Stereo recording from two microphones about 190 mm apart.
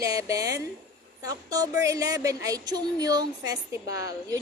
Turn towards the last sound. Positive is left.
turn(degrees=-20)  # may be behind; listen again after turning